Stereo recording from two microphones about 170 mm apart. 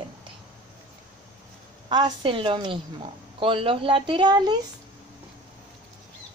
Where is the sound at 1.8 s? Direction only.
25° right (ahead or behind).